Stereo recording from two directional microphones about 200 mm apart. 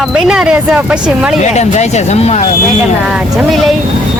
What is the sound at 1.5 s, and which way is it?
Speech, 35° left (ahead or behind).